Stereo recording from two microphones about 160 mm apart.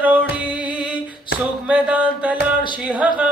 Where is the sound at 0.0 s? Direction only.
10° right (ahead or behind).